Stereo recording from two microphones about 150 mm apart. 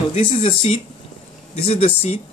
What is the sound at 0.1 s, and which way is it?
Speech, 45° left (ahead or behind).